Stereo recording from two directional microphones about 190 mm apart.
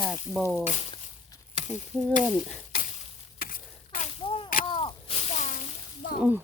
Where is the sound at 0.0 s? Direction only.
Centre (ahead or behind).